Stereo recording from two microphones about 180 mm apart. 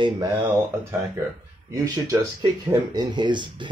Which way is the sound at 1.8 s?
20° right (ahead or behind).